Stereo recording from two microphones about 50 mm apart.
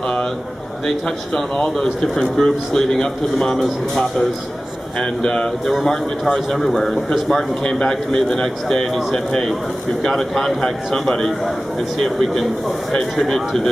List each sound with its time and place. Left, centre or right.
0.8 s a man's voice: centre
3.6 s a man's voice: centre
5.2 s a man's voice: centre
5.9 s a man's voice: centre
7.6 s a man's voice: centre